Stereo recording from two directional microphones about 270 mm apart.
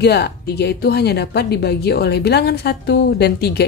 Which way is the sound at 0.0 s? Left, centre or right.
Left.